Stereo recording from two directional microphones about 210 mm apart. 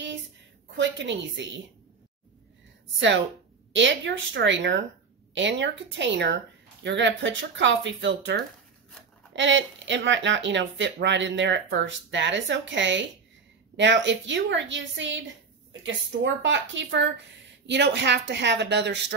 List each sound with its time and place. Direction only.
0.7 s a woman's voice: 60° right (ahead or behind)
3.7 s speech: 60° right (ahead or behind)
16.4 s speech: 60° right (ahead or behind)